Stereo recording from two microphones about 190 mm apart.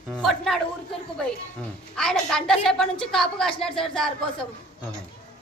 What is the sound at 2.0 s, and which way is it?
A woman's voice, 5° left (ahead or behind).